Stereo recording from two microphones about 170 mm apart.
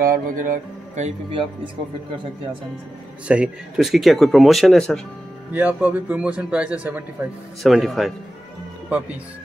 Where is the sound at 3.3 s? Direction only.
5° right (ahead or behind).